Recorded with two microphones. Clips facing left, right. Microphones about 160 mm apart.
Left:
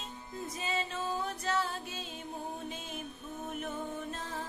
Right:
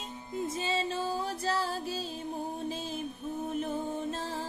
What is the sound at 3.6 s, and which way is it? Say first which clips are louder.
Music: right 5 dB; 30° right (ahead or behind).